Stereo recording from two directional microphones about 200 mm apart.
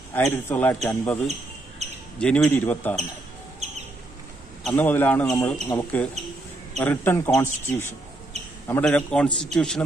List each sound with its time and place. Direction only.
0.1 s speech: 10° left (ahead or behind)
1.8 s a sound: 35° right (ahead or behind)
2.1 s speech: 5° left (ahead or behind)
3.6 s bird: 35° right (ahead or behind)
4.6 s a man's voice: 10° left (ahead or behind)